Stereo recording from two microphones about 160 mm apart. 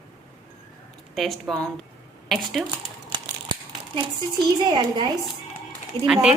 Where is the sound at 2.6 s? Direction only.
30° right (ahead or behind).